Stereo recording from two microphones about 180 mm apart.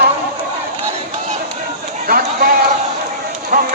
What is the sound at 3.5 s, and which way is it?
Run, 50° right (ahead or behind).